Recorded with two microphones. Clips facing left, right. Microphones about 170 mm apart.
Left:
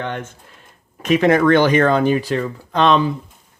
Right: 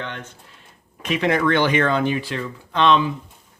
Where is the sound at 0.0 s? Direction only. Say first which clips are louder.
Left 6 dB; 50° left (ahead or behind).